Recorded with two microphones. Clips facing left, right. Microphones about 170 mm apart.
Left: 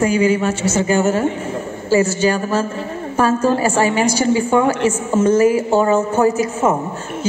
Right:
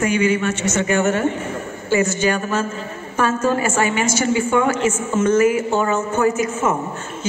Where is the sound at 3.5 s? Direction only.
35° left (ahead or behind).